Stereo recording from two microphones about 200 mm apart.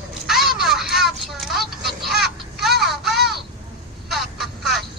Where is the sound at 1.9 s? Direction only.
Centre (ahead or behind).